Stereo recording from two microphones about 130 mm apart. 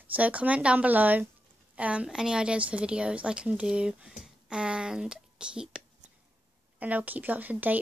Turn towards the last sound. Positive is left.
turn(degrees=-15)  # may be behind; listen again after turning